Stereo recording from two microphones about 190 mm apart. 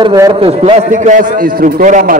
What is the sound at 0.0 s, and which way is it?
A man's voice, 20° right (ahead or behind).